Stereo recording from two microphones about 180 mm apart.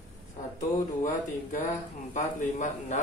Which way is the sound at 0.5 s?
45° left (ahead or behind).